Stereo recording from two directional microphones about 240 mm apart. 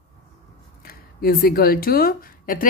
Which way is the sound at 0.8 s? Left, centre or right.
Left.